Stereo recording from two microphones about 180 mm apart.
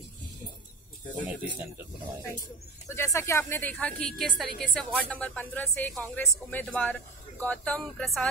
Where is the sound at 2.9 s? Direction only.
15° left (ahead or behind).